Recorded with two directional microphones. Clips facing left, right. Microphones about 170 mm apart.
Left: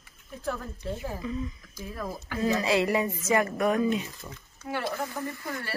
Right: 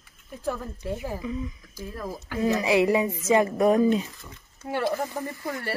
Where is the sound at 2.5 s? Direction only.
15° right (ahead or behind).